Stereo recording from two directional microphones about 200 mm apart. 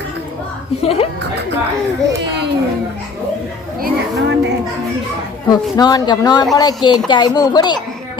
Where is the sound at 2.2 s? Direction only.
60° right (ahead or behind).